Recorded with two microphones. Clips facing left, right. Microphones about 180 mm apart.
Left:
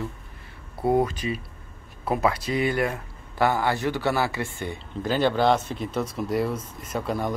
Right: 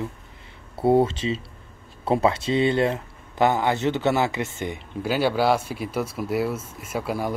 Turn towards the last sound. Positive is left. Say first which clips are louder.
# right 1 dB
turn(degrees=-5)  # may be behind; listen again after turning